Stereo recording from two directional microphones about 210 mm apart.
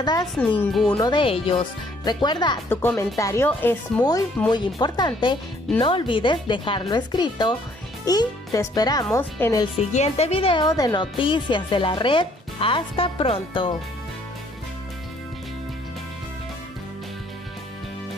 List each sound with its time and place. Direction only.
0.0 s speech: 20° left (ahead or behind)
0.6 s speech: 5° left (ahead or behind)
1.0 s speech: 25° left (ahead or behind)
2.7 s speech: 10° left (ahead or behind)
4.5 s a child's voice: 20° left (ahead or behind)
9.8 s speech: 30° left (ahead or behind)